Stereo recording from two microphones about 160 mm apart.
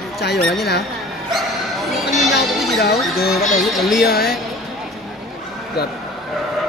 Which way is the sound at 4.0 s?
75° left (ahead or behind).